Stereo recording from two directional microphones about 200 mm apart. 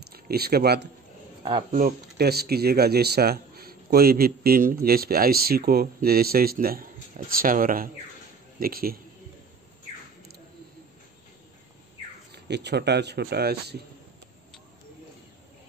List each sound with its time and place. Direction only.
0.1 s speech: 50° right (ahead or behind)
12.3 s speech: 55° right (ahead or behind)